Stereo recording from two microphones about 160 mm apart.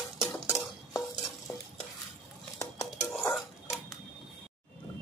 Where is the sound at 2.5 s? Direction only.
20° left (ahead or behind).